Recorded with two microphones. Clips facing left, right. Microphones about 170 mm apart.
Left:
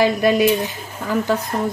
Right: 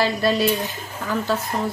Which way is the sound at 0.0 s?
15° left (ahead or behind).